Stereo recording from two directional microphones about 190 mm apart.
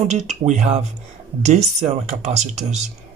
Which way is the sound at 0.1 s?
35° right (ahead or behind).